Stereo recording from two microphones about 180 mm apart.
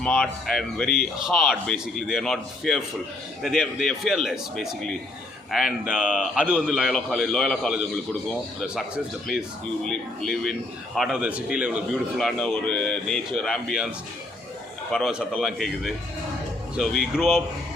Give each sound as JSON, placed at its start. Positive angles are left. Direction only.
{"t": 0.0, "sound": "a man's voice", "side_deg": 0}
{"t": 9.8, "sound": "a man's voice", "side_deg": 0}
{"t": 14.9, "sound": "a man's voice", "side_deg": -5}